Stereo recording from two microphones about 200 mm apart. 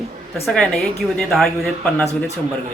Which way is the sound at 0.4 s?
Centre (ahead or behind).